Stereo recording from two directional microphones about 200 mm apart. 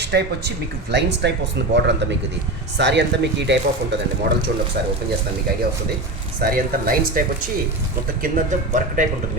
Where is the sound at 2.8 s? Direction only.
60° right (ahead or behind).